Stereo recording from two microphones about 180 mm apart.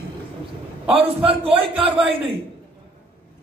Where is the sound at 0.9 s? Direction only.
30° right (ahead or behind).